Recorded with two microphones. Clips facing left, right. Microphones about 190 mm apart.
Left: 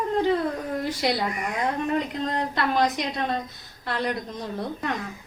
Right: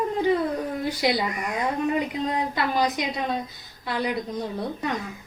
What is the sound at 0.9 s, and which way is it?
Speech, centre (ahead or behind).